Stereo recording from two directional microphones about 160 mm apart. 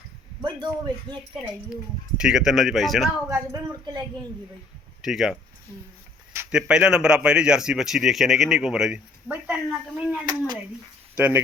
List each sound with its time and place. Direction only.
0.4 s speech: 25° right (ahead or behind)
2.1 s a man's voice: 5° right (ahead or behind)
3.2 s speech: 20° right (ahead or behind)
5.0 s a man's voice: centre (ahead or behind)
6.5 s a man's voice: 5° right (ahead or behind)
10.2 s speech: 25° right (ahead or behind)
11.2 s speech: 10° right (ahead or behind)